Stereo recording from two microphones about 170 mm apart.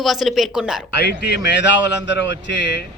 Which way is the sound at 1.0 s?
80° left.